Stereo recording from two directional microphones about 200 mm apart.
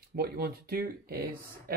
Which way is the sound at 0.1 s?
50° right (ahead or behind).